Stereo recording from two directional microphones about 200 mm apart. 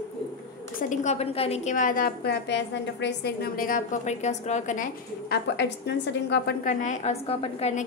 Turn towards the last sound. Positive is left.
turn(degrees=30)  # may be behind; listen again after turning